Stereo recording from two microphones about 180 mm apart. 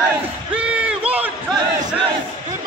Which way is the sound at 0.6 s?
5° right (ahead or behind).